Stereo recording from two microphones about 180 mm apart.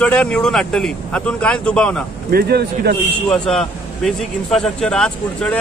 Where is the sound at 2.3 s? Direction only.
60° right (ahead or behind).